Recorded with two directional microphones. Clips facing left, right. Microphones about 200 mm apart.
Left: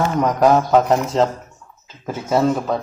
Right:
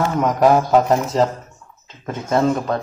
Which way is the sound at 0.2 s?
Centre (ahead or behind).